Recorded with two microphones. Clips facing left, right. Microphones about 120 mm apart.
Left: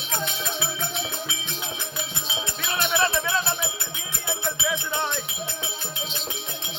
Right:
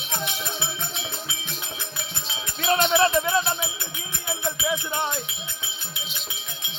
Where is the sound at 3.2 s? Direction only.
15° right (ahead or behind).